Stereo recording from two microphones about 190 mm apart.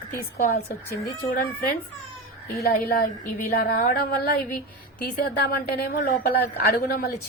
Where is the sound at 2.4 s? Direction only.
55° left (ahead or behind).